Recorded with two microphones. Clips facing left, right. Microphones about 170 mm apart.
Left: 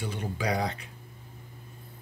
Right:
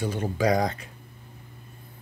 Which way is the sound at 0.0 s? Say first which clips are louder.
Right 7 dB; 40° right (ahead or behind).